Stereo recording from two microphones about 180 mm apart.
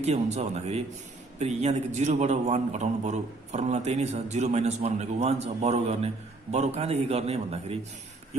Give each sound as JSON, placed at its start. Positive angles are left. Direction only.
{"t": 0.0, "sound": "a man's voice", "side_deg": -35}